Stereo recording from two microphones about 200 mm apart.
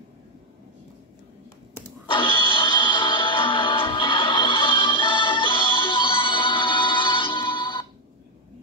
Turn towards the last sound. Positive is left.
turn(degrees=25)  # may be behind; listen again after turning